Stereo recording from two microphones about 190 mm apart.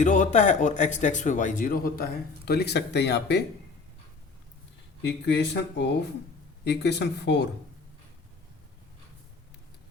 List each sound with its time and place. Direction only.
0.0 s speech: 40° left (ahead or behind); by 3.4 s 65° left (ahead or behind)
5.0 s speech: 65° left (ahead or behind)